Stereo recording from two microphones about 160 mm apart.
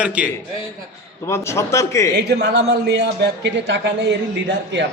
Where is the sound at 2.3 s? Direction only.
90° right.